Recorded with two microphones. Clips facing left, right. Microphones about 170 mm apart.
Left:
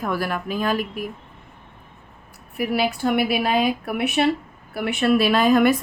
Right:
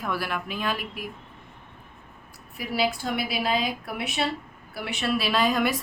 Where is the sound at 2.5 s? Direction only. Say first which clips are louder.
Left 4 dB; 60° left (ahead or behind).